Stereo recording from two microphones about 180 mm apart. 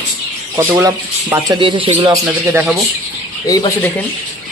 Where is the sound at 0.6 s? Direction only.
20° right (ahead or behind).